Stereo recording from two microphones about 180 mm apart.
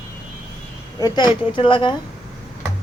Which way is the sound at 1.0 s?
25° left (ahead or behind).